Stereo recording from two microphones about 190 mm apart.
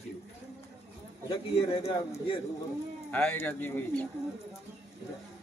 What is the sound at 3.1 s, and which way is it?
Speech, 10° left (ahead or behind).